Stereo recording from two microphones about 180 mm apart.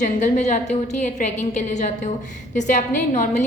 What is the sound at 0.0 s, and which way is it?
A woman's voice, 40° left (ahead or behind).